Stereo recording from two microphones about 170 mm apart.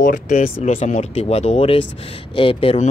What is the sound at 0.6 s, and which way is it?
Speech, 40° left (ahead or behind).